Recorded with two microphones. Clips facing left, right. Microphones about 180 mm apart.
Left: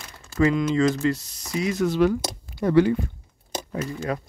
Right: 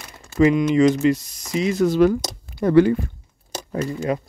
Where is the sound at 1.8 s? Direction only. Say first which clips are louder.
Right 4 dB; 40° right (ahead or behind).